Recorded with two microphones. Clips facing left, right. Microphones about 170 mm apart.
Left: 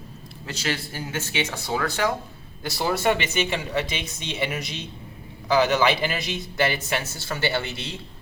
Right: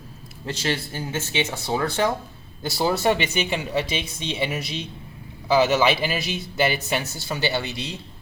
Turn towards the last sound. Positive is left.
turn(degrees=-20)  # may be behind; listen again after turning